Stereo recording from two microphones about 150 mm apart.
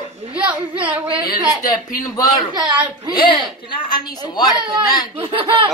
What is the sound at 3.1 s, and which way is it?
A woman's voice, 35° left (ahead or behind).